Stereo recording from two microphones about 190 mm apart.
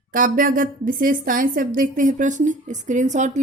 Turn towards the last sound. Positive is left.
turn(degrees=-40)  # may be behind; listen again after turning